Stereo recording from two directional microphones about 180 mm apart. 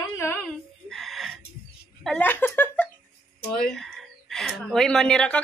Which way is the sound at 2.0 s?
10° left (ahead or behind).